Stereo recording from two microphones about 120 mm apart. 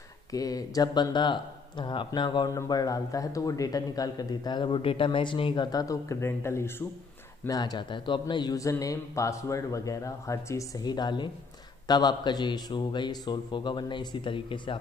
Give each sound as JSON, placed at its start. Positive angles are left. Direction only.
{"t": 0.3, "sound": "speech", "side_deg": 30}
{"t": 7.4, "sound": "a man's voice", "side_deg": 35}